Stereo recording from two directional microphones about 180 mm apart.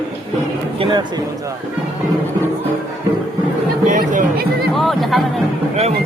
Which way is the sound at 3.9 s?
45° right (ahead or behind).